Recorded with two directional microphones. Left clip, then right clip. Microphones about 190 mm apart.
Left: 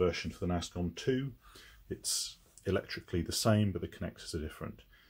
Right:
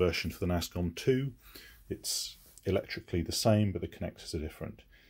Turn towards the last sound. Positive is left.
turn(degrees=-15)  # may be behind; listen again after turning